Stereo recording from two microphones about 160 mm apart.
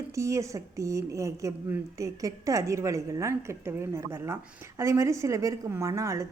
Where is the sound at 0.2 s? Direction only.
20° right (ahead or behind).